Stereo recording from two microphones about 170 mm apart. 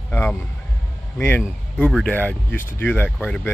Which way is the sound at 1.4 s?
5° left (ahead or behind).